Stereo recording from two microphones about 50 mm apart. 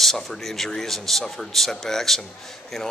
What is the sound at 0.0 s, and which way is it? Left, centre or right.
A man's voice, centre.